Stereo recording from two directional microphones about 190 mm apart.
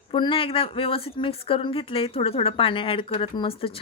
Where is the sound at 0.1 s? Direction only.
25° left (ahead or behind).